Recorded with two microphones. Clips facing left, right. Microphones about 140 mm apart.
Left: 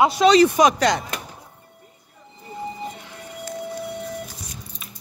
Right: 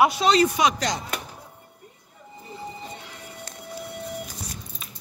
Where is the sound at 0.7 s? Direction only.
65° left (ahead or behind).